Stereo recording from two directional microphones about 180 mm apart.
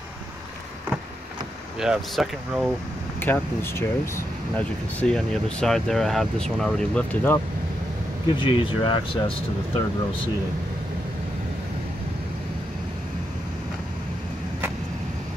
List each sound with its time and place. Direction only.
1.8 s speech: centre (ahead or behind)
3.2 s speech: 10° left (ahead or behind)
8.4 s speech: 30° left (ahead or behind)